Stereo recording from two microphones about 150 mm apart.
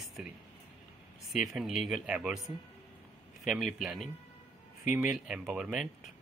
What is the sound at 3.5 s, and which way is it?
Speech, centre (ahead or behind).